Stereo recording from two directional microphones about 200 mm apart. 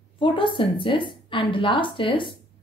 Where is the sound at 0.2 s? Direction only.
25° left (ahead or behind).